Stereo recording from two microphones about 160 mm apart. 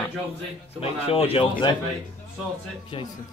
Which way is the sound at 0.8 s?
35° left (ahead or behind).